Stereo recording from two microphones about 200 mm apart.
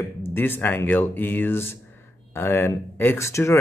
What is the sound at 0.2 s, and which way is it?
Speech, 10° left (ahead or behind).